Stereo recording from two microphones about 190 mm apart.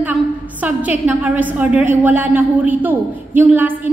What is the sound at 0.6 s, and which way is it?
A woman's voice, 10° right (ahead or behind).